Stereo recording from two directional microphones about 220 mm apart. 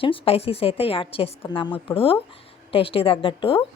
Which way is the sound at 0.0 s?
25° left (ahead or behind).